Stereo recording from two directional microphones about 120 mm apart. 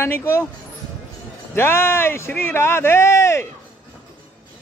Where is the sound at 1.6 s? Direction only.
20° left (ahead or behind).